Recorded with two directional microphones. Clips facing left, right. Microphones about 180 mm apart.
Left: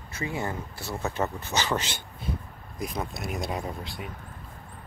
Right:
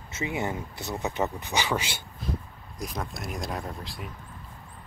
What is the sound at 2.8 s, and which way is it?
Speech, centre (ahead or behind).